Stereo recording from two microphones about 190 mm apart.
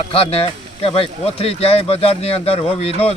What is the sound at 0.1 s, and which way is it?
Speech, 30° left (ahead or behind).